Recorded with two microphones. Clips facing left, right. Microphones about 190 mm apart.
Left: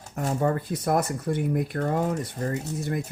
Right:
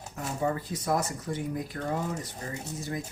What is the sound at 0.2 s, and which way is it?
Speech, 55° left (ahead or behind).